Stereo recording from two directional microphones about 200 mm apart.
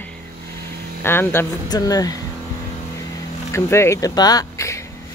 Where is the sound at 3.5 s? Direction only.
15° left (ahead or behind).